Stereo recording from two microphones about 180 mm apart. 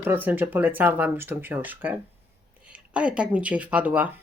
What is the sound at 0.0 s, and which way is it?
Speech, 10° right (ahead or behind).